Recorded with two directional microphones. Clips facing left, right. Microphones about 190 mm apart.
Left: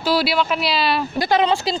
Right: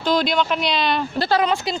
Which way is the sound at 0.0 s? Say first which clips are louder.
Even; 5° left (ahead or behind).